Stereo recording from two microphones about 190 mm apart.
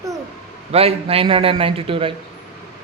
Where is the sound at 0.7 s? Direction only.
30° right (ahead or behind).